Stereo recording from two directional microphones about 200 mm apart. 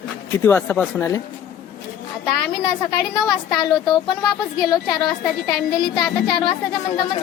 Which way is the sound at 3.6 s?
20° left (ahead or behind).